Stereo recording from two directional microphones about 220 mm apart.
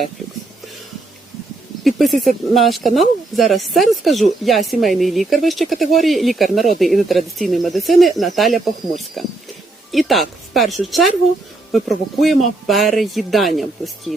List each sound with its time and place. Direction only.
1.8 s speech: centre (ahead or behind)